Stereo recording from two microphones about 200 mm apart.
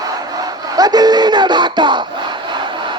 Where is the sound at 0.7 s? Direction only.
20° right (ahead or behind).